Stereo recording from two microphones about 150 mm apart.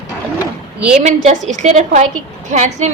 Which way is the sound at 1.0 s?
55° right (ahead or behind).